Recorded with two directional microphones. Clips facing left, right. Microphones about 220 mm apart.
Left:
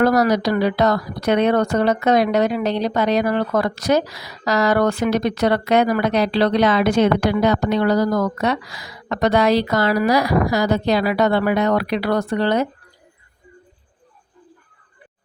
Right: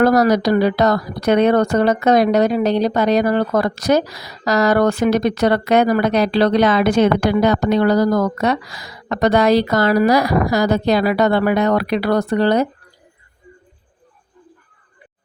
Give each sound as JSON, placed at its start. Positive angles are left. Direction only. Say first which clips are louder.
{"t": 0.0, "sound": "speech", "louder": "right 3 dB", "side_deg": -45}